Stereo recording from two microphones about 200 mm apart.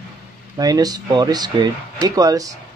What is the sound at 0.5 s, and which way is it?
Speech, 20° right (ahead or behind).